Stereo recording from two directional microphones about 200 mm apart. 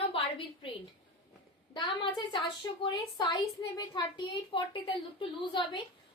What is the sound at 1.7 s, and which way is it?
A woman's voice, 25° left (ahead or behind).